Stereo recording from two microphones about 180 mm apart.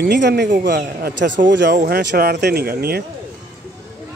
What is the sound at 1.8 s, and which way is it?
Speech, 65° right (ahead or behind).